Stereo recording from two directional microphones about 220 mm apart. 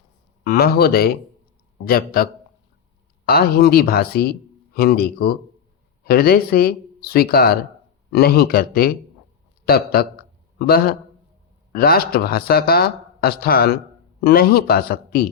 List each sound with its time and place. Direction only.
0.4 s a man's voice: 45° left (ahead or behind)